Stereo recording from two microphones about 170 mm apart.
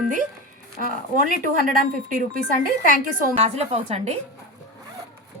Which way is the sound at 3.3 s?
40° right (ahead or behind).